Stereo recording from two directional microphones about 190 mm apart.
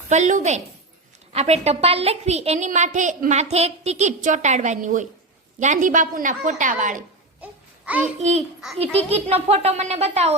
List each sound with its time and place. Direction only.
0.1 s a woman's voice: 40° right (ahead or behind)
7.4 s a sound: 10° right (ahead or behind)
8.0 s a woman's voice: 35° right (ahead or behind)